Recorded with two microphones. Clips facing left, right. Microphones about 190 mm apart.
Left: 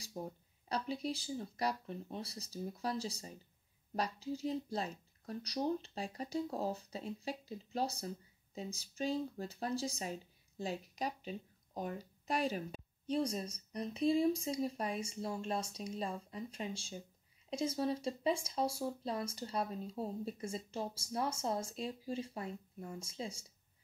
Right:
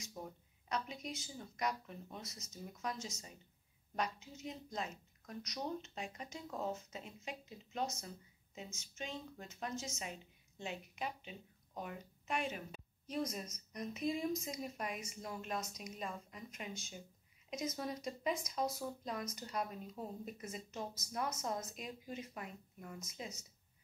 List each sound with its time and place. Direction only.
0.0 s speech: 30° left (ahead or behind)